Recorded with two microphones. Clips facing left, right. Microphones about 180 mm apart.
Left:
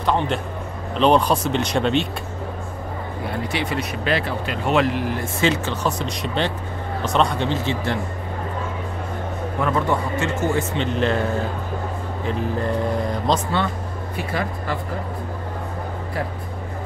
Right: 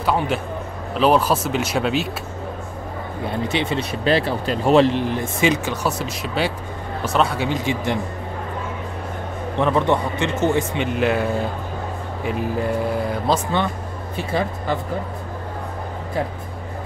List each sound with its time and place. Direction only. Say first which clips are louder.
0.0 s a man's voice: even; 5° right (ahead or behind)
3.4 s speech: right 3 dB; 25° right (ahead or behind)
9.6 s speech: right 3 dB; 20° right (ahead or behind)
12.3 s speech: right 1 dB; 10° right (ahead or behind)
14.1 s speech: right 3 dB; 25° right (ahead or behind)